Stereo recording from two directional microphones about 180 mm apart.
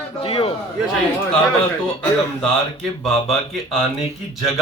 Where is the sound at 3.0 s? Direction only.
Centre (ahead or behind).